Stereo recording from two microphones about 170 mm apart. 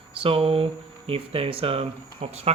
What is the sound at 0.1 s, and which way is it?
Speech, 35° right (ahead or behind).